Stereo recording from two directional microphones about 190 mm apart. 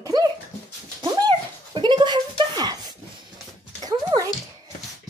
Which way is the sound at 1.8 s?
25° right (ahead or behind).